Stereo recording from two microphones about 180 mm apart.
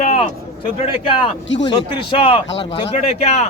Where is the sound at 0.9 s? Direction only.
25° left (ahead or behind).